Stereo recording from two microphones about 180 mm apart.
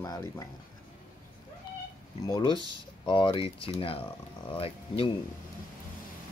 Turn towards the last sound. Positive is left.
turn(degrees=30)  # may be behind; listen again after turning